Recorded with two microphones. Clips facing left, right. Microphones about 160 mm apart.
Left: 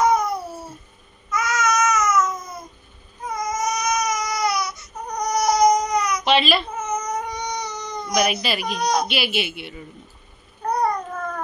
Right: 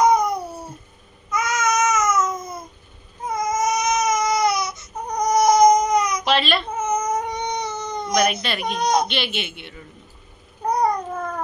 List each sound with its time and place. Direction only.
0.0 s a sound: 15° right (ahead or behind)
1.3 s babbling: 20° right (ahead or behind)
3.3 s baby cry: 25° right (ahead or behind)
6.2 s speech: centre (ahead or behind)
6.7 s baby cry: 20° right (ahead or behind)
8.1 s speech: centre (ahead or behind)
8.7 s speech: 20° right (ahead or behind)
9.0 s speech: 5° left (ahead or behind)
10.6 s babbling: 15° right (ahead or behind)